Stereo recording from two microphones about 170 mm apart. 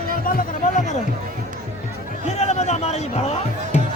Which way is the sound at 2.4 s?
40° left (ahead or behind).